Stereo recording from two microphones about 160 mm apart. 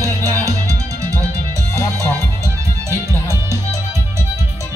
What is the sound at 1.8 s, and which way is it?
Music, 15° left (ahead or behind).